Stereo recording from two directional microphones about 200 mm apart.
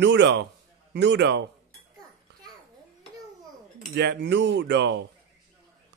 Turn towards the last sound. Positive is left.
turn(degrees=-60)  # may be behind; listen again after turning